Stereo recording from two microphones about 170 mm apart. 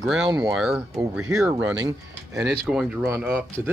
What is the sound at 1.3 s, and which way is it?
Speech, 15° right (ahead or behind).